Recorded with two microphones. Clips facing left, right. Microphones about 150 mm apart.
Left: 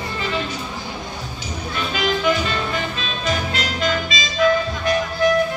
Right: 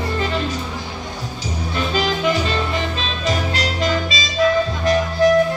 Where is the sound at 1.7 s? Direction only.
30° right (ahead or behind).